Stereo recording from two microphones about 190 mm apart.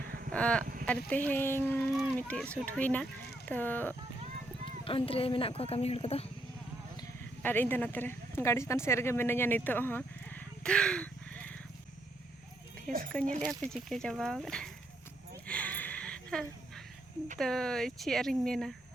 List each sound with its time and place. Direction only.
0.0 s a sound: 55° right (ahead or behind)
0.3 s speech: 5° left (ahead or behind)
4.9 s speech: 30° left (ahead or behind)
7.4 s speech: 10° left (ahead or behind)
12.9 s speech: centre (ahead or behind)
15.4 s a sound: 5° left (ahead or behind)
17.3 s speech: centre (ahead or behind)